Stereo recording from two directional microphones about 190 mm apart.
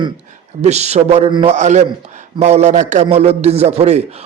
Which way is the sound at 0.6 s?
35° right (ahead or behind).